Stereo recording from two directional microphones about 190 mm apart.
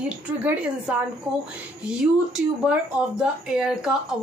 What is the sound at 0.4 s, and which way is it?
Speech, 5° right (ahead or behind).